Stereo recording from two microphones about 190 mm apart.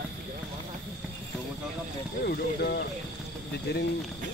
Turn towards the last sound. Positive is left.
turn(degrees=60)  # may be behind; listen again after turning